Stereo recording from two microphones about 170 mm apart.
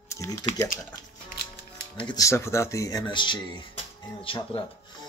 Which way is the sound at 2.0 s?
25° left (ahead or behind).